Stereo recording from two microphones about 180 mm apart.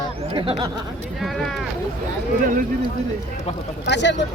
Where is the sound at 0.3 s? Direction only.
25° right (ahead or behind).